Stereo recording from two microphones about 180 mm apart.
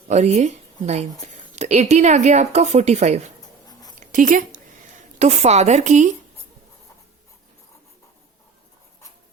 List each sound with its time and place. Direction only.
0.1 s speech: 40° right (ahead or behind)